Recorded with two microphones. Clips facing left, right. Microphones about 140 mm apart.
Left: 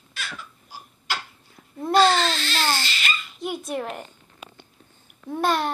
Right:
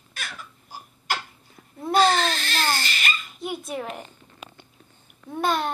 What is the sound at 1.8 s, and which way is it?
Speech, 5° right (ahead or behind).